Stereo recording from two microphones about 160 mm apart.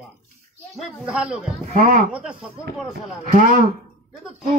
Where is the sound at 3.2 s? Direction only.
50° right (ahead or behind).